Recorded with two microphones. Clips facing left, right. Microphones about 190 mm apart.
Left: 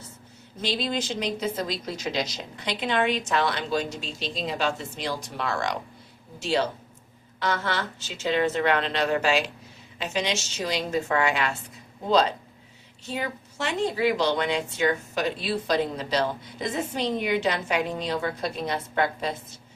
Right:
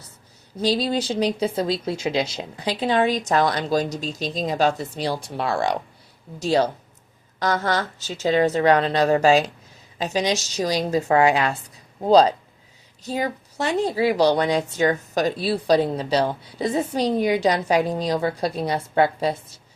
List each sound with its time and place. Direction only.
0.6 s a woman's voice: 35° right (ahead or behind)